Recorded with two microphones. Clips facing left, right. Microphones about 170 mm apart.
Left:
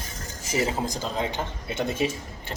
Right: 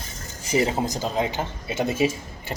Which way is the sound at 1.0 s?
10° right (ahead or behind).